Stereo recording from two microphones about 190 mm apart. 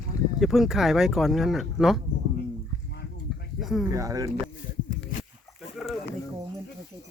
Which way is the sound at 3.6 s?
Centre (ahead or behind).